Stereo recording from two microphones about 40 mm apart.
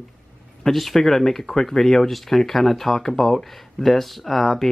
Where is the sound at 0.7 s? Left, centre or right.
Centre.